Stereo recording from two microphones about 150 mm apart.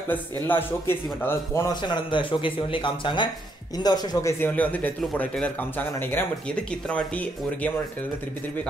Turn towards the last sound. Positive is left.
turn(degrees=10)  # may be behind; listen again after turning